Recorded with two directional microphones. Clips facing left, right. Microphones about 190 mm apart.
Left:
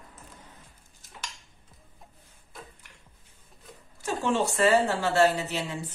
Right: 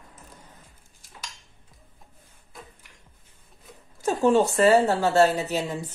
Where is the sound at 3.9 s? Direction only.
40° right (ahead or behind).